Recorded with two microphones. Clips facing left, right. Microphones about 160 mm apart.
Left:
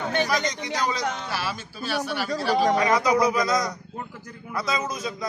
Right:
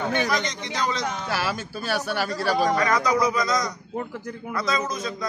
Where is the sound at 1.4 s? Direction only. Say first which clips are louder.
Right 3 dB; 85° right.